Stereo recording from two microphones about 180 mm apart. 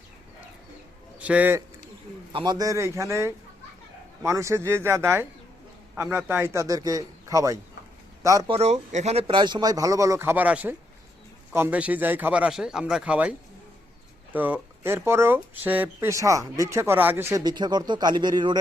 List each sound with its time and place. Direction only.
1.2 s a man's voice: 5° right (ahead or behind)
2.3 s speech: 25° right (ahead or behind)
8.4 s speech: 35° right (ahead or behind); by 13.3 s 5° right (ahead or behind)
14.3 s speech: 10° right (ahead or behind)